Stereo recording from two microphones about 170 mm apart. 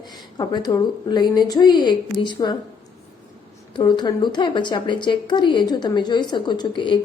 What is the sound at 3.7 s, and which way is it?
A woman's voice, 25° left (ahead or behind).